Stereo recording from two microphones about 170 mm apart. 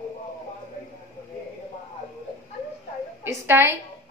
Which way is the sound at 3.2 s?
15° right (ahead or behind).